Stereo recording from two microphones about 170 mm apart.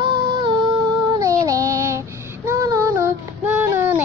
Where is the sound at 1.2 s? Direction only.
20° right (ahead or behind).